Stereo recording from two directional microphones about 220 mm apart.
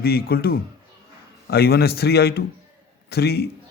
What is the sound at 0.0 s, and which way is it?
A man's voice, 45° left (ahead or behind).